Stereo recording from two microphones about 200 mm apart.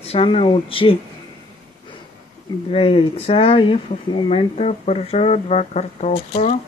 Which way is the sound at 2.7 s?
30° left (ahead or behind).